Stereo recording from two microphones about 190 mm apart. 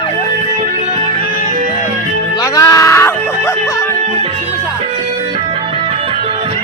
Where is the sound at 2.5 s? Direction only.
20° left (ahead or behind).